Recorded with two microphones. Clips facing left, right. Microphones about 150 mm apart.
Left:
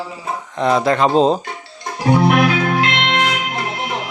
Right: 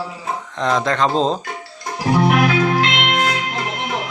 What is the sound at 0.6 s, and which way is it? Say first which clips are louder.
Speech: left 3 dB; 10° left (ahead or behind).